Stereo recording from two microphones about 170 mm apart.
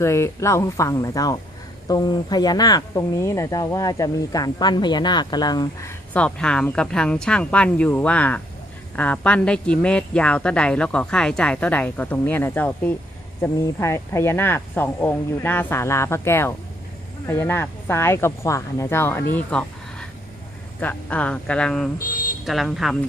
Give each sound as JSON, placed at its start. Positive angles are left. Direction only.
{"t": 0.0, "sound": "a woman's voice", "side_deg": 15}
{"t": 6.1, "sound": "a woman's voice", "side_deg": 5}
{"t": 19.3, "sound": "a sound", "side_deg": 5}
{"t": 20.8, "sound": "a woman's voice", "side_deg": 10}